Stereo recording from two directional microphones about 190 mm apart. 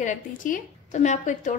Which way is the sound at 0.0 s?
45° left (ahead or behind).